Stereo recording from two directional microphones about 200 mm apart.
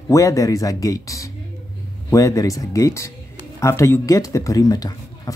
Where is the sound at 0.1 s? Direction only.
15° left (ahead or behind).